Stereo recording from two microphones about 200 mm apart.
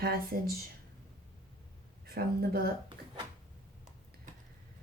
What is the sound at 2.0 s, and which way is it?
Speech, 50° right (ahead or behind).